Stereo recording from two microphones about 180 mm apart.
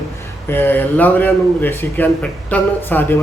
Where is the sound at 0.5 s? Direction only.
10° left (ahead or behind).